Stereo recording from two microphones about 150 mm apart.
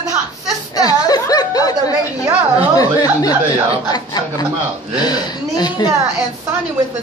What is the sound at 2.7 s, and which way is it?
A woman's voice, 25° left (ahead or behind).